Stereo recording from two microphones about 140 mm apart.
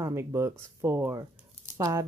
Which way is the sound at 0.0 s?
20° right (ahead or behind).